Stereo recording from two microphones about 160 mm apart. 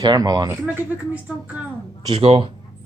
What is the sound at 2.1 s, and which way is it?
Speech, 35° right (ahead or behind).